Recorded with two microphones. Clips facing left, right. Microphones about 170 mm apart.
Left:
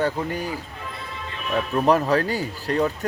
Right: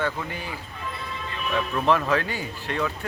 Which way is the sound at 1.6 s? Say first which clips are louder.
Left 4 dB; 40° left (ahead or behind).